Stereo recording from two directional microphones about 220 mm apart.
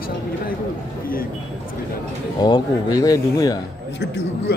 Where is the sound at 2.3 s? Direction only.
20° left (ahead or behind).